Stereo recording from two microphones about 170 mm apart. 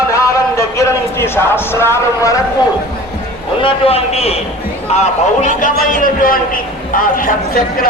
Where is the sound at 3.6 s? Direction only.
35° left (ahead or behind); by 7.9 s 55° left (ahead or behind).